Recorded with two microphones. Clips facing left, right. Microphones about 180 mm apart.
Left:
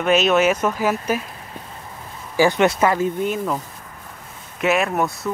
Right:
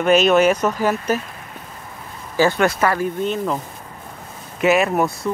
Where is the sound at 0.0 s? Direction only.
Centre (ahead or behind).